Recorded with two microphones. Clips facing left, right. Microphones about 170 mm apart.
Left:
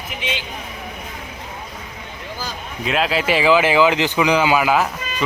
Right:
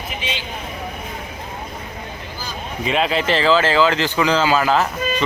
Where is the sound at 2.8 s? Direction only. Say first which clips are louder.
Right 1 dB; centre (ahead or behind).